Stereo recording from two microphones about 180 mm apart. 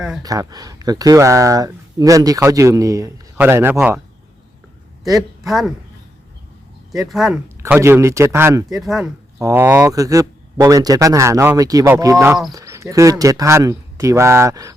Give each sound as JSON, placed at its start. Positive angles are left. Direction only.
{"t": 0.2, "sound": "speech", "side_deg": -20}
{"t": 5.5, "sound": "speech", "side_deg": 0}
{"t": 7.1, "sound": "speech", "side_deg": 0}
{"t": 7.4, "sound": "speech", "side_deg": -15}
{"t": 8.8, "sound": "speech", "side_deg": 0}
{"t": 9.4, "sound": "speech", "side_deg": -15}